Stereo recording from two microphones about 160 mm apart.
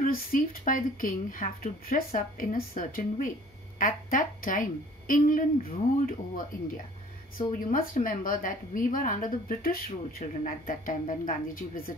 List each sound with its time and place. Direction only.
0.0 s a woman's voice: 65° left (ahead or behind)
7.5 s a woman's voice: 55° left (ahead or behind)